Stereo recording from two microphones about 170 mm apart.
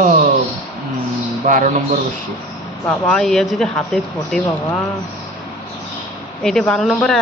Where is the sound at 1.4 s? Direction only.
50° right (ahead or behind).